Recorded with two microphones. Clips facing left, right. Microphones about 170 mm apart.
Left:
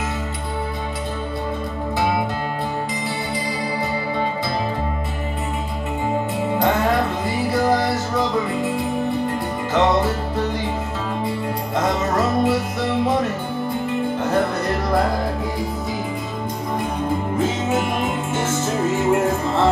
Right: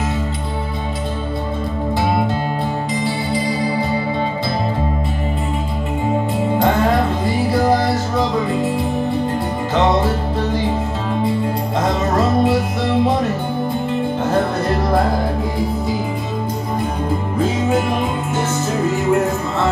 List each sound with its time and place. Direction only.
6.6 s music: 25° right (ahead or behind)
9.8 s music: 25° right (ahead or behind)
11.8 s music: 25° right (ahead or behind)
14.2 s music: 25° right (ahead or behind)
18.3 s music: 25° left (ahead or behind)